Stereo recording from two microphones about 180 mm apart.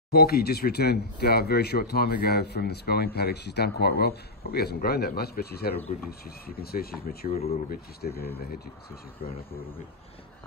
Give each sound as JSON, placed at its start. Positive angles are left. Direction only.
{"t": 0.1, "sound": "speech", "side_deg": 60}